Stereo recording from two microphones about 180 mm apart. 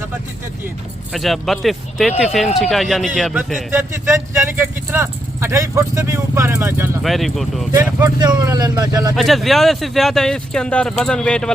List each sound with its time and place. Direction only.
1.1 s speech: centre (ahead or behind)
3.7 s speech: 15° right (ahead or behind)
7.0 s speech: centre (ahead or behind)
7.8 s speech: 15° right (ahead or behind)
9.1 s speech: centre (ahead or behind)